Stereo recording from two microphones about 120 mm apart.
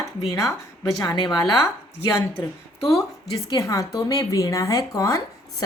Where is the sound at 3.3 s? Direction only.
30° left (ahead or behind).